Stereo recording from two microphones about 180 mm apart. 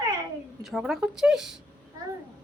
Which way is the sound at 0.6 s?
Centre (ahead or behind).